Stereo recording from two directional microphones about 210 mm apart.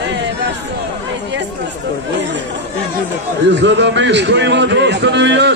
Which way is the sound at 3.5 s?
55° right (ahead or behind).